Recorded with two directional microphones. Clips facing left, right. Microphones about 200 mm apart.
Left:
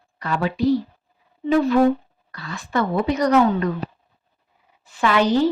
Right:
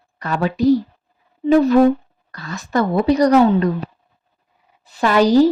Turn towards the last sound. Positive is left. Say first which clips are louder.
# right 5 dB
turn(degrees=-40)  # may be behind; listen again after turning